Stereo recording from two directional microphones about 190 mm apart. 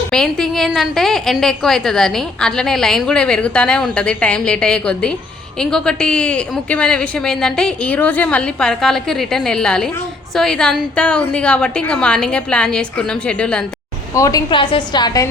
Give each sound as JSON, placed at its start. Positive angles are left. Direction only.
{"t": 0.1, "sound": "a woman's voice", "side_deg": 5}
{"t": 14.2, "sound": "a woman's voice", "side_deg": 20}